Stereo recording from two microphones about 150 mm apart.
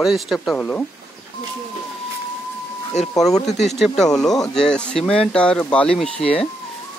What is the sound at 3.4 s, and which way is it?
Speech, 50° left (ahead or behind).